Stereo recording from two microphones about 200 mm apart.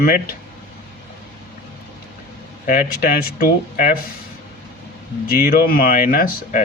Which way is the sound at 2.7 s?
45° left (ahead or behind).